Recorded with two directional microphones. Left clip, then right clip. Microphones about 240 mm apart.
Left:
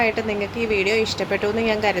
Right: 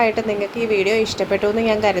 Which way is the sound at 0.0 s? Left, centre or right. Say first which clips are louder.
Right 3 dB; centre.